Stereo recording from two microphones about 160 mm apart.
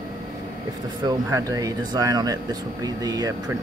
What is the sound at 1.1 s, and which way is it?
Speech, 20° right (ahead or behind).